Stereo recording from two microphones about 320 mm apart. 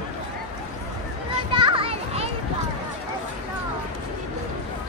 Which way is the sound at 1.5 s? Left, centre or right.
Centre.